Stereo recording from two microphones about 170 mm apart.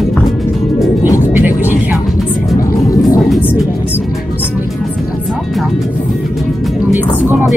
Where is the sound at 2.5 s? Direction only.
20° left (ahead or behind).